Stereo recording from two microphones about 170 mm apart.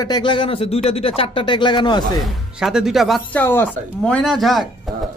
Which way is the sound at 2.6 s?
5° right (ahead or behind).